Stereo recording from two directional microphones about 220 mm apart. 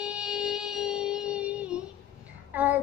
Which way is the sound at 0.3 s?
5° right (ahead or behind).